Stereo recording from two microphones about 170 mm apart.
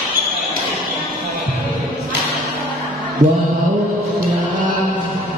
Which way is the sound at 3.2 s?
25° right (ahead or behind).